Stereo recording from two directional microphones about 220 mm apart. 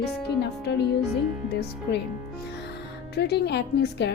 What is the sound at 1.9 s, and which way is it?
Speech, 50° left (ahead or behind).